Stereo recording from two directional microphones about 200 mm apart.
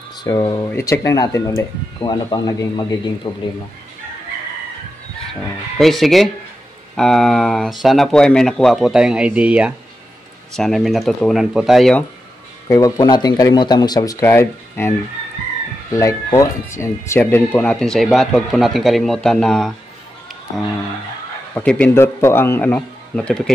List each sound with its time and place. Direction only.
0.2 s speech: 20° left (ahead or behind)
5.8 s speech: centre (ahead or behind)
12.6 s speech: 15° left (ahead or behind)
21.5 s speech: 5° left (ahead or behind)